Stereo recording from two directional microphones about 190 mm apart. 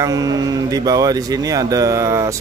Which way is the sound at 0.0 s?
20° right (ahead or behind).